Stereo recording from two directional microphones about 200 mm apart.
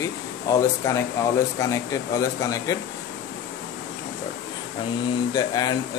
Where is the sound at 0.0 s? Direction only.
15° left (ahead or behind).